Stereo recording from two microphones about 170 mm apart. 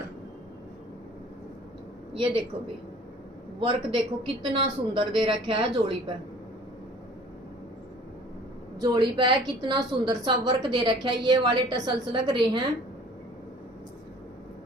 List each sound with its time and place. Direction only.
2.1 s a woman's voice: 30° right (ahead or behind)
3.6 s a woman's voice: 30° right (ahead or behind)
8.8 s a woman's voice: 25° right (ahead or behind)